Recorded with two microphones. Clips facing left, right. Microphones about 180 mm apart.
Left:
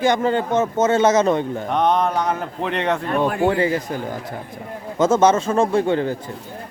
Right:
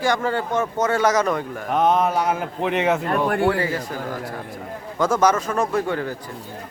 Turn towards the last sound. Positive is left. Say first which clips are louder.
# left 4 dB
turn(degrees=25)  # may be behind; listen again after turning